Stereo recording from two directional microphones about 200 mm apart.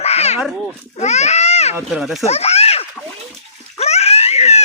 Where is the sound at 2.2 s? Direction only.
30° left (ahead or behind).